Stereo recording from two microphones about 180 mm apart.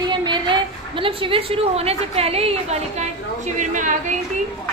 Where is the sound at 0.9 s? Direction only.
30° right (ahead or behind).